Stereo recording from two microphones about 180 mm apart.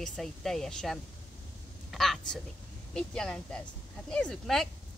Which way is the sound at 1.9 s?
Centre (ahead or behind).